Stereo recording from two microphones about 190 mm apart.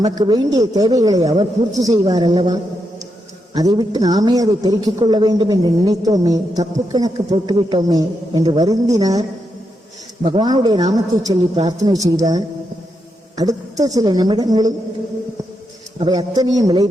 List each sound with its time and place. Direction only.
0.0 s speech: 20° right (ahead or behind)
10.2 s speech: 25° right (ahead or behind)
16.3 s speech: 20° right (ahead or behind)